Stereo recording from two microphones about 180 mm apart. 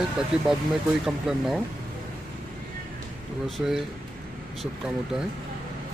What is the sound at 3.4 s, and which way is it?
Speech, centre (ahead or behind).